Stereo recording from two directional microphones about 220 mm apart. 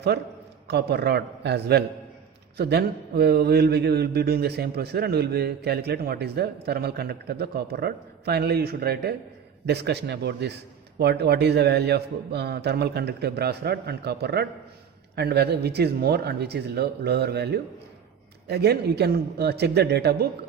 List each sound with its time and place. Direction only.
0.1 s speech: 50° right (ahead or behind)